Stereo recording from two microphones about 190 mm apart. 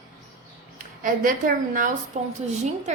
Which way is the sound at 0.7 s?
45° right (ahead or behind).